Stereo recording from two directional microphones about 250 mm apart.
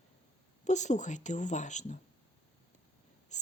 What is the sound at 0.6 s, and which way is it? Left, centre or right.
Speech, left.